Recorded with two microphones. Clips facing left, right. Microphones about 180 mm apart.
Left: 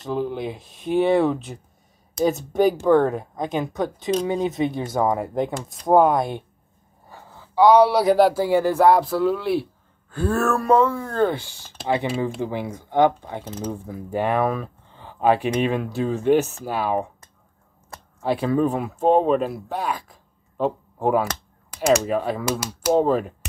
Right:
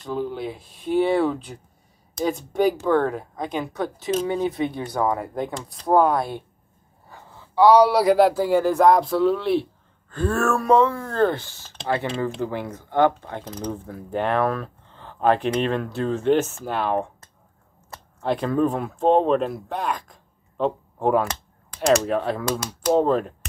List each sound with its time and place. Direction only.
0.1 s speech: 15° left (ahead or behind)
2.5 s speech: 10° left (ahead or behind)
7.9 s speech: centre (ahead or behind)